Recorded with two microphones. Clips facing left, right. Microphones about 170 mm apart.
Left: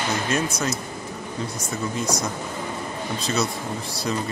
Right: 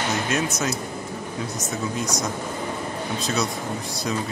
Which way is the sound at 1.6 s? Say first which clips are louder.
Right 1 dB; 20° right (ahead or behind).